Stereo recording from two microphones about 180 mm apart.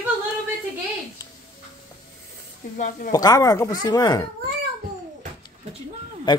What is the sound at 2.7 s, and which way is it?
Speech, 45° left (ahead or behind).